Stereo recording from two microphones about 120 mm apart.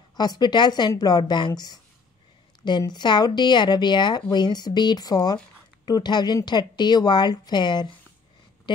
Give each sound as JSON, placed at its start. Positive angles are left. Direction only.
{"t": 0.1, "sound": "speech", "side_deg": 35}
{"t": 2.8, "sound": "speech", "side_deg": 35}